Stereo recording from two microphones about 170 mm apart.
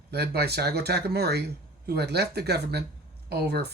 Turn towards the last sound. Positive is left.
turn(degrees=-70)  # may be behind; listen again after turning